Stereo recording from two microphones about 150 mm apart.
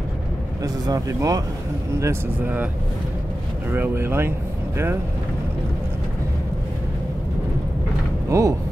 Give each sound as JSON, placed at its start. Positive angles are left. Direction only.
{"t": 0.8, "sound": "speech", "side_deg": -25}
{"t": 3.7, "sound": "speech", "side_deg": -15}
{"t": 8.3, "sound": "speech", "side_deg": -20}